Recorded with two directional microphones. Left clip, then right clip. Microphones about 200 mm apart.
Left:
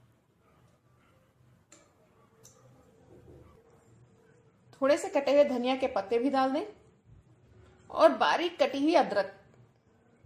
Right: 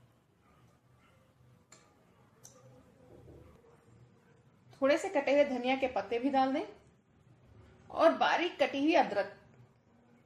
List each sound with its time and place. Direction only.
4.8 s a woman's voice: 25° left (ahead or behind)
7.9 s a woman's voice: 25° left (ahead or behind)